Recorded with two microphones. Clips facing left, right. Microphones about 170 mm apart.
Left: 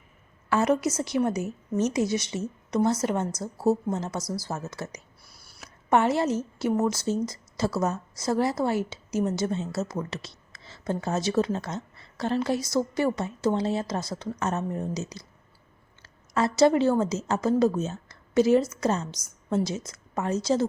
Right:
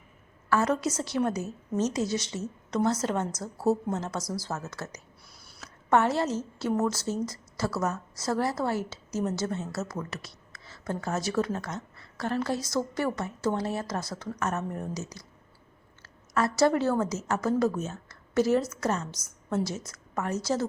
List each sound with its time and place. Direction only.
0.5 s a woman's voice: 15° left (ahead or behind)
16.3 s a woman's voice: 20° left (ahead or behind)